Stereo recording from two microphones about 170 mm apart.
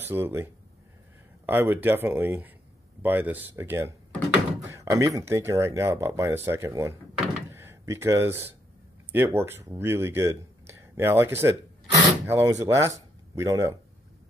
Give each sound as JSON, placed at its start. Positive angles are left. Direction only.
{"t": 0.0, "sound": "speech", "side_deg": -15}